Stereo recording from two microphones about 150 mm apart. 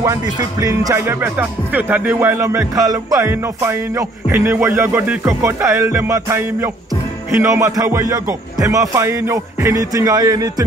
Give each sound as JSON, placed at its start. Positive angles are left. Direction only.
{"t": 0.0, "sound": "music", "side_deg": -20}